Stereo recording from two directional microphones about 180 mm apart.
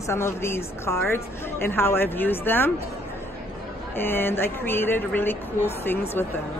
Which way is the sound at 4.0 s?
10° left (ahead or behind).